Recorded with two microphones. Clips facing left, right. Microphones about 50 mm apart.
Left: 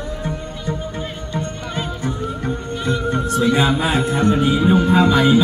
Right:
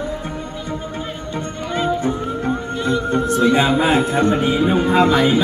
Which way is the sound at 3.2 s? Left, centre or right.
Right.